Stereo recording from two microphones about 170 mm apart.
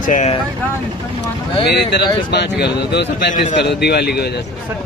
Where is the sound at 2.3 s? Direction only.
90° left.